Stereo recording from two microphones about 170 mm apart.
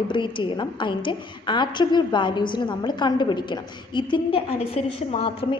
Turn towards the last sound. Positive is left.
turn(degrees=35)  # may be behind; listen again after turning